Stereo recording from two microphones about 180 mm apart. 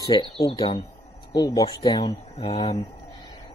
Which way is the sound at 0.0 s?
25° left (ahead or behind).